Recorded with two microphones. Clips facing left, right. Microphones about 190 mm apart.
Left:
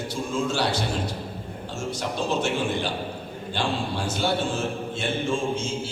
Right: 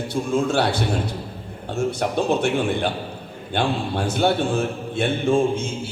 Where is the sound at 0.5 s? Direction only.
60° right (ahead or behind).